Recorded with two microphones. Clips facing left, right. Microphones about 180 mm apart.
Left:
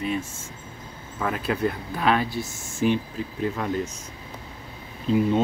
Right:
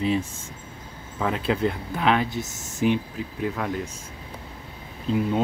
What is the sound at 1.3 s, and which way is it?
Speech, 25° right (ahead or behind).